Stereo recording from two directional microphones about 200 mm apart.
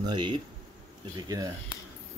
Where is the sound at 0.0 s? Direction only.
20° right (ahead or behind).